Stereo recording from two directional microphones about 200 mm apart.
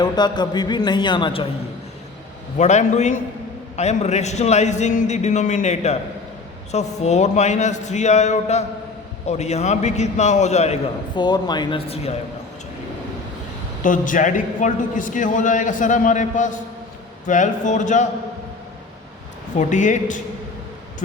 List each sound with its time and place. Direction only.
0.0 s a man's voice: 20° left (ahead or behind)
2.6 s a man's voice: 35° left (ahead or behind)
11.1 s a man's voice: 20° left (ahead or behind)
13.8 s a man's voice: 40° left (ahead or behind)
19.5 s a man's voice: 40° left (ahead or behind)